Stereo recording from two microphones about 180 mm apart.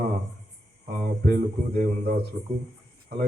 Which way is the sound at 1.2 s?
65° right (ahead or behind).